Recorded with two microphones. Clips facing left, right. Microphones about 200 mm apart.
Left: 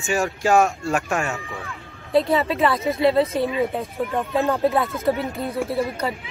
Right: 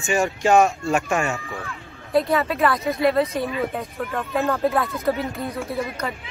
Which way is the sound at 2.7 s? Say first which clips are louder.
Left 1 dB; centre (ahead or behind).